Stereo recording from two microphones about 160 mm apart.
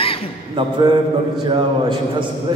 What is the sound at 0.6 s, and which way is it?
A man's voice, 30° right (ahead or behind).